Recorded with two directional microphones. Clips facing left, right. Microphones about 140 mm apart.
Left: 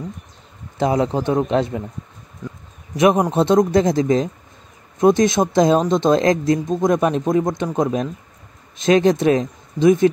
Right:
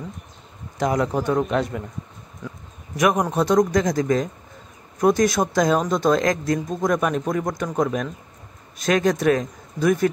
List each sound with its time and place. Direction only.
0.7 s speech: 30° left (ahead or behind)
3.0 s speech: 25° left (ahead or behind)